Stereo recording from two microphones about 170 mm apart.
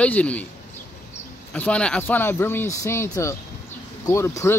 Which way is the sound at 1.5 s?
5° left (ahead or behind).